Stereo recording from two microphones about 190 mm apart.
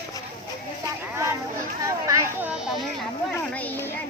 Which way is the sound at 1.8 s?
15° right (ahead or behind).